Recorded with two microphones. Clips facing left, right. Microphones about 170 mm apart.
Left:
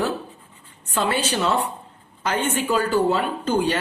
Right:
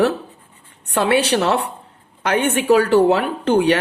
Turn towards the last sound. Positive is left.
turn(degrees=-65)  # may be behind; listen again after turning